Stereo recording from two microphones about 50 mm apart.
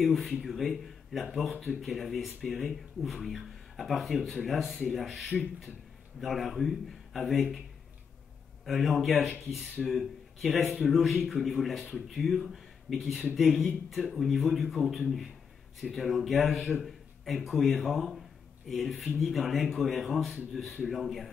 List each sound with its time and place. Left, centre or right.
0.0 s speech: centre
8.6 s speech: centre